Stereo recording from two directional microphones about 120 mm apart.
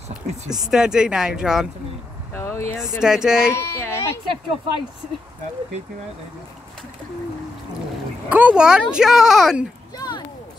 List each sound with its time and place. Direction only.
0.7 s speech: 5° right (ahead or behind)
2.3 s speech: 25° left (ahead or behind)
2.8 s speech: 5° right (ahead or behind)
3.5 s a sound: 20° left (ahead or behind)
8.3 s speech: 15° right (ahead or behind)
9.9 s a sound: 35° left (ahead or behind)